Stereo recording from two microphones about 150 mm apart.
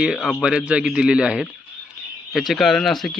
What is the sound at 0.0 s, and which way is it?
A man's voice, 5° right (ahead or behind).